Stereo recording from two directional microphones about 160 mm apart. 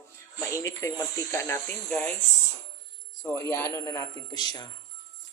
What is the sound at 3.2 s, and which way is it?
Speech, 20° left (ahead or behind).